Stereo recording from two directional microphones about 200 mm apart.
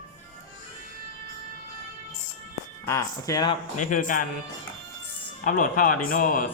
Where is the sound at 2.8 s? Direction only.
15° left (ahead or behind).